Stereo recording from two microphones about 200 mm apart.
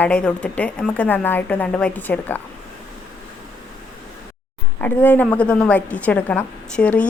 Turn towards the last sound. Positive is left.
turn(degrees=5)  # may be behind; listen again after turning